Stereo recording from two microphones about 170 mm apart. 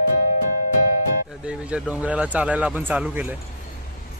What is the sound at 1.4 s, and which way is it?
Speech, 5° right (ahead or behind).